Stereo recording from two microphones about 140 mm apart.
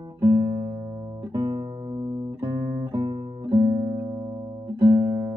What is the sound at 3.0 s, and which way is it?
Music, 30° right (ahead or behind).